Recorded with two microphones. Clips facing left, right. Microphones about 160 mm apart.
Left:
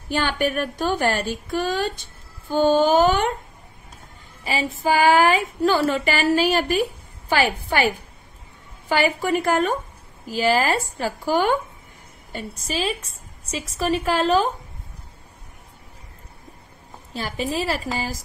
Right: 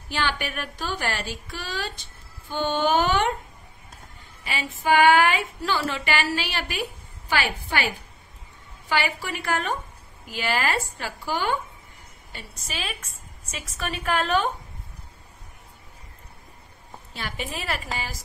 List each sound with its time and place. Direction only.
0.1 s a woman's voice: 45° left (ahead or behind)
4.5 s a woman's voice: 35° left (ahead or behind)
17.1 s a woman's voice: 35° left (ahead or behind)